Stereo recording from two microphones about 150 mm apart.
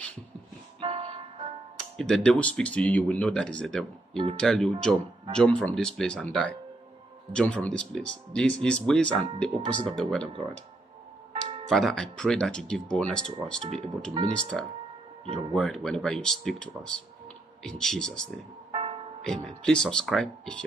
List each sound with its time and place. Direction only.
0.7 s music: 40° right (ahead or behind)
2.0 s speech: 5° left (ahead or behind)
11.7 s speech: 5° left (ahead or behind)
18.7 s music: 35° right (ahead or behind)
19.2 s speech: 5° left (ahead or behind)